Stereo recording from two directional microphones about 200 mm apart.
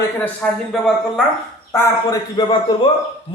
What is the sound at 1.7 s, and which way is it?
A man's voice, 15° left (ahead or behind).